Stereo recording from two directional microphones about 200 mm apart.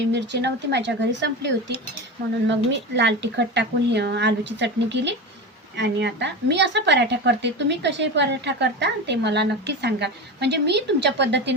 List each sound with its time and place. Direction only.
0.1 s a woman's voice: 60° right (ahead or behind)